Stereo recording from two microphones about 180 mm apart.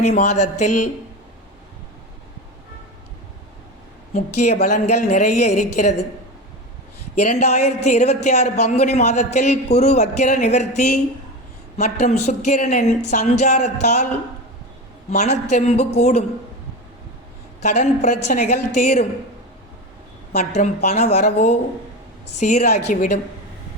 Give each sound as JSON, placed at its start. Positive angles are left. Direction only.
{"t": 0.0, "sound": "a man's voice", "side_deg": 40}
{"t": 4.1, "sound": "a man's voice", "side_deg": 40}
{"t": 7.2, "sound": "a man's voice", "side_deg": 40}
{"t": 15.1, "sound": "a man's voice", "side_deg": 40}
{"t": 17.6, "sound": "a woman's voice", "side_deg": 40}
{"t": 20.3, "sound": "a man's voice", "side_deg": 40}